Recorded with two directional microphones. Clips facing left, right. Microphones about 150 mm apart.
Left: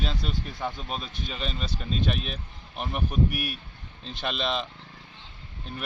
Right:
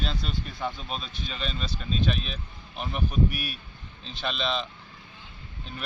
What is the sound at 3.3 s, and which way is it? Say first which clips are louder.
Speech: left 3 dB; 55° left (ahead or behind).